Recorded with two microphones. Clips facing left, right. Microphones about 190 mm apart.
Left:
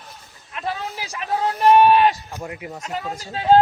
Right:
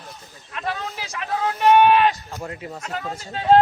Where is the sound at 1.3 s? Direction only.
35° left (ahead or behind).